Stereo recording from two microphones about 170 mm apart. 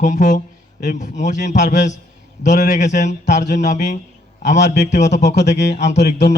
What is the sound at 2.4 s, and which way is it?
A man's voice, 45° left (ahead or behind).